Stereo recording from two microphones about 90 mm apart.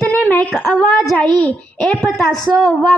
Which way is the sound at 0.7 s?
5° left (ahead or behind).